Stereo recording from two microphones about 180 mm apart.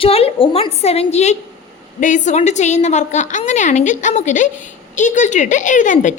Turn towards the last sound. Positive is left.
turn(degrees=45)  # may be behind; listen again after turning